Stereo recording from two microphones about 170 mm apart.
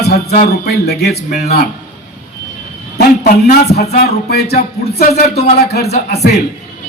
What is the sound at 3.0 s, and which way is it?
A man's voice, 65° left (ahead or behind).